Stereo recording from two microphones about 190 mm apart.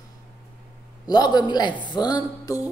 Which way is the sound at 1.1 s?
20° left (ahead or behind).